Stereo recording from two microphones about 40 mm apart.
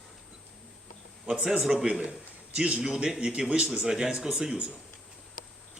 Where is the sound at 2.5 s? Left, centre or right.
Right.